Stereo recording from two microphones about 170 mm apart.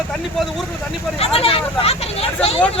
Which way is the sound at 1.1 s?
35° left (ahead or behind).